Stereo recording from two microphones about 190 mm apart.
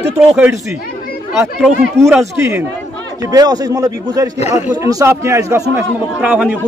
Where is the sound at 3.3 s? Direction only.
20° right (ahead or behind).